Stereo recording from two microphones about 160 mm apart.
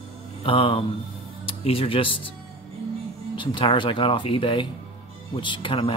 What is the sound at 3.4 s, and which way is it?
Speech, 30° left (ahead or behind).